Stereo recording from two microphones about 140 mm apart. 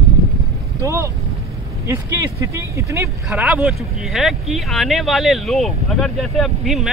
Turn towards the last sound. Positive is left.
turn(degrees=0)  # may be behind; listen again after turning